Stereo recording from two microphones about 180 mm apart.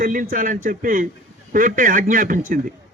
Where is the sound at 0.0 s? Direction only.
50° right (ahead or behind).